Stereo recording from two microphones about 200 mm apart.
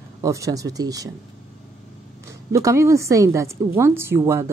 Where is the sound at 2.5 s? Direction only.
15° right (ahead or behind).